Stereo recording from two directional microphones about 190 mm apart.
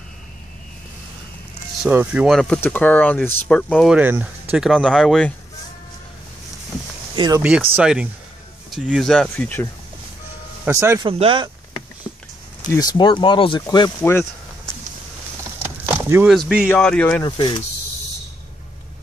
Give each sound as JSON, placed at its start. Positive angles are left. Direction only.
{"t": 1.8, "sound": "speech", "side_deg": -10}
{"t": 2.3, "sound": "speech", "side_deg": 5}
{"t": 3.9, "sound": "speech", "side_deg": -10}
{"t": 7.2, "sound": "speech", "side_deg": -20}
{"t": 7.4, "sound": "speech", "side_deg": -10}
{"t": 10.6, "sound": "speech", "side_deg": -15}
{"t": 11.1, "sound": "speech", "side_deg": -30}
{"t": 12.1, "sound": "a sound", "side_deg": 15}
{"t": 12.7, "sound": "speech", "side_deg": 20}
{"t": 15.6, "sound": "a sound", "side_deg": -10}
{"t": 16.3, "sound": "speech", "side_deg": -5}
{"t": 16.7, "sound": "speech", "side_deg": 5}
{"t": 17.2, "sound": "speech", "side_deg": 25}